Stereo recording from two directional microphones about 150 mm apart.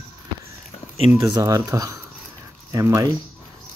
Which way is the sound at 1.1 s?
25° right (ahead or behind).